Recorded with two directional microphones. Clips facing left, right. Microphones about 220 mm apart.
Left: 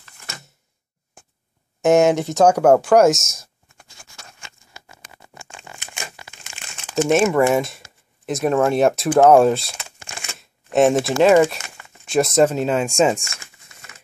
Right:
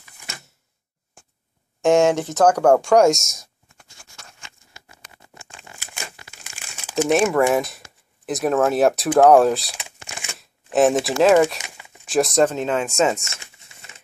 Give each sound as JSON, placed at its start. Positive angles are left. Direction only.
{"t": 1.8, "sound": "speech", "side_deg": 5}
{"t": 6.6, "sound": "speech", "side_deg": -5}
{"t": 13.2, "sound": "a sound", "side_deg": -25}